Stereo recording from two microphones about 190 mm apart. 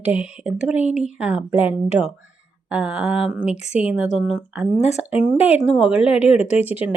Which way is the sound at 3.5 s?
35° left (ahead or behind).